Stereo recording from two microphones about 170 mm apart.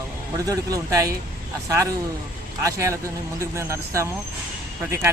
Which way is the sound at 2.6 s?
15° right (ahead or behind).